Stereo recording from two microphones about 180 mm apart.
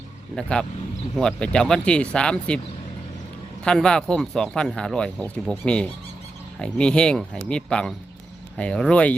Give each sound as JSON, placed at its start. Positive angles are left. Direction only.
{"t": 0.3, "sound": "speech", "side_deg": 5}
{"t": 3.6, "sound": "speech", "side_deg": 5}